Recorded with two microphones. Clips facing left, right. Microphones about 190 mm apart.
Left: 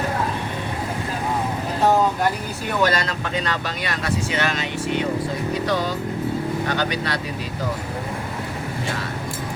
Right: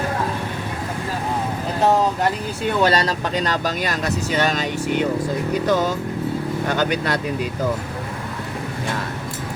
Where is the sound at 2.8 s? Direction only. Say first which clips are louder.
Right 2 dB; 35° right (ahead or behind).